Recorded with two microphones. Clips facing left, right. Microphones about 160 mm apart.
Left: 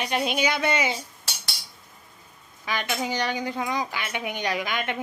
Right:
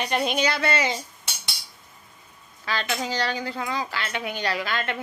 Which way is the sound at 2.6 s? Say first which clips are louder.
Even; 15° left (ahead or behind).